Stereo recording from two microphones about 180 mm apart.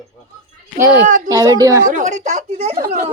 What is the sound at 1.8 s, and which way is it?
Speech, 45° right (ahead or behind).